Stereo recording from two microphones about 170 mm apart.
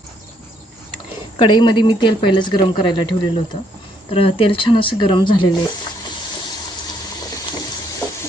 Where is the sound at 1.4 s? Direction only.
25° left (ahead or behind).